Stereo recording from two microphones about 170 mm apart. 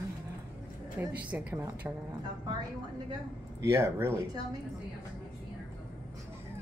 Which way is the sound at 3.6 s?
15° right (ahead or behind).